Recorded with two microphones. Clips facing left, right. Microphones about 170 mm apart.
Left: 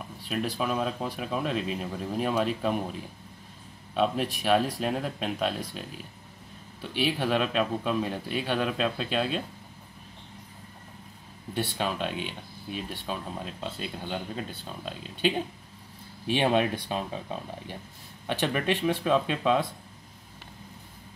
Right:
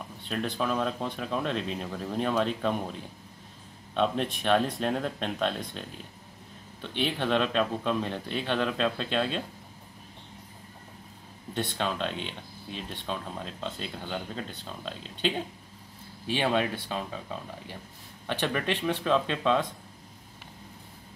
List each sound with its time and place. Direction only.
0.3 s speech: 5° left (ahead or behind)
6.8 s speech: 5° left (ahead or behind)
11.5 s speech: 10° left (ahead or behind)